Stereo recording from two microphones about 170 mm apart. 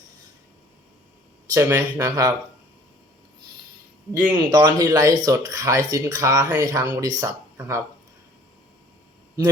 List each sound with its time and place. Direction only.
1.5 s speech: 20° right (ahead or behind)
4.3 s speech: 25° right (ahead or behind)